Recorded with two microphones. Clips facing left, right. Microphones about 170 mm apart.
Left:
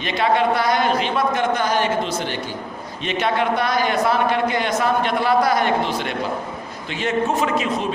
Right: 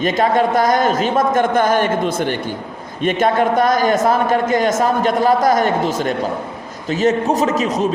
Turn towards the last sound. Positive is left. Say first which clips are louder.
# right 4 dB
turn(degrees=-40)  # may be behind; listen again after turning